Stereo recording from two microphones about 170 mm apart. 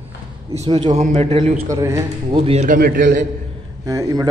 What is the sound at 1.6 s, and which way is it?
Speech, 20° right (ahead or behind).